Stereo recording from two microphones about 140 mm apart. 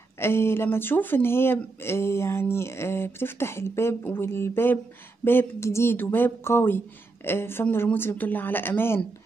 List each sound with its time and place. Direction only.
0.2 s speech: 15° left (ahead or behind)